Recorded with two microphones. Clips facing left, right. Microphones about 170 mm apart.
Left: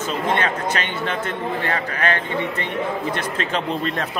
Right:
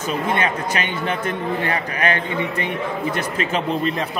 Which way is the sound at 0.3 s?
10° right (ahead or behind).